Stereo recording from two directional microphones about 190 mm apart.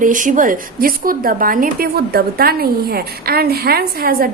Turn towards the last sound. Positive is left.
turn(degrees=-55)  # may be behind; listen again after turning